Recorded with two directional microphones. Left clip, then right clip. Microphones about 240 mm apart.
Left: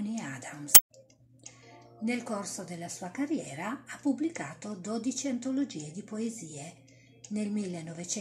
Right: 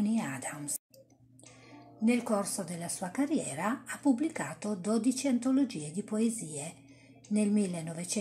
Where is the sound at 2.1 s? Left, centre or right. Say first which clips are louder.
Right 4 dB; right.